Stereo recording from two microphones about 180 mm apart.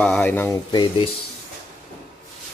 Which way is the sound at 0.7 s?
25° left (ahead or behind).